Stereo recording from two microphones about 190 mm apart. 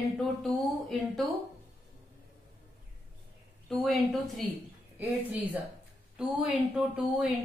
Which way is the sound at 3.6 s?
Centre (ahead or behind).